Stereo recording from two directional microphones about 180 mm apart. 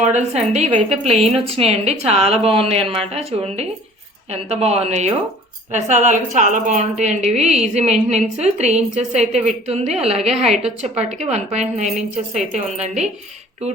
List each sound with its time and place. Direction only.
0.0 s a woman's voice: 40° right (ahead or behind)